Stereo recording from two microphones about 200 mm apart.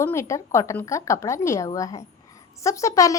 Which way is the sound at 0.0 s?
15° left (ahead or behind).